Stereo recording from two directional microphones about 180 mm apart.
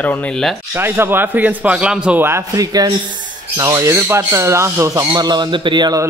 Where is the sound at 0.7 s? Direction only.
15° right (ahead or behind).